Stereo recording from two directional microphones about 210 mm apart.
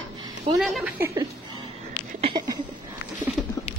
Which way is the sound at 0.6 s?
Centre (ahead or behind).